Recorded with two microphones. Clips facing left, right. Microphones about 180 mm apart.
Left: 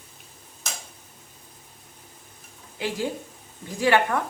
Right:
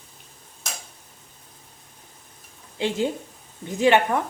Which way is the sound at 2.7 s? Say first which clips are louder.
Right 4 dB; 25° right (ahead or behind).